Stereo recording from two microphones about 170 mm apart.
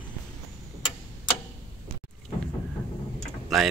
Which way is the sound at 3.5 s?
Centre (ahead or behind).